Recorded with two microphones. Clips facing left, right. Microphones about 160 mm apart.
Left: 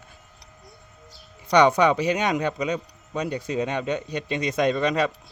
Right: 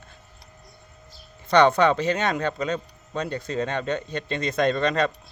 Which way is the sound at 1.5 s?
10° left (ahead or behind).